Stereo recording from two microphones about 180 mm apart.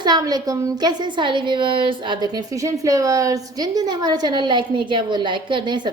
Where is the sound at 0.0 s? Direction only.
20° right (ahead or behind).